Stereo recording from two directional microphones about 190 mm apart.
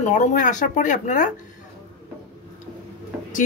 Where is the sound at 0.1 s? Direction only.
40° left (ahead or behind).